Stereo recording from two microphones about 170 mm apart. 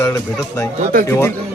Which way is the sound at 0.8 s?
55° right (ahead or behind).